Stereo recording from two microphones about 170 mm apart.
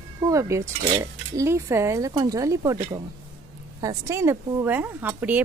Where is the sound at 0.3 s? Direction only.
20° right (ahead or behind).